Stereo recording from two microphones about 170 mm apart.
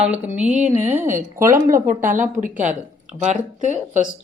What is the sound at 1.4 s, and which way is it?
Speech, 15° right (ahead or behind).